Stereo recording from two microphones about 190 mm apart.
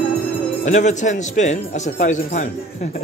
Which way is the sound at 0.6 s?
40° left (ahead or behind).